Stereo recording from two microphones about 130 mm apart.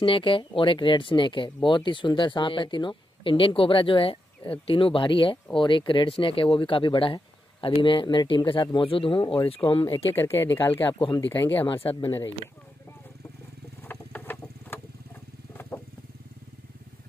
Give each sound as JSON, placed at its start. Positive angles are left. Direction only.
{"t": 0.0, "sound": "speech", "side_deg": 40}
{"t": 10.1, "sound": "speech", "side_deg": 15}
{"t": 11.6, "sound": "speech", "side_deg": 40}
{"t": 13.8, "sound": "rodents", "side_deg": 15}